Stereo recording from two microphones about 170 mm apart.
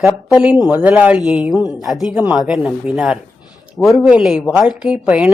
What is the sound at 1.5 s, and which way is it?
Speech, 20° left (ahead or behind).